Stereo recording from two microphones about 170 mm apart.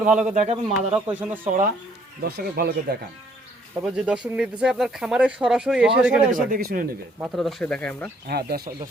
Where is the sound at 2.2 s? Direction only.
65° right (ahead or behind).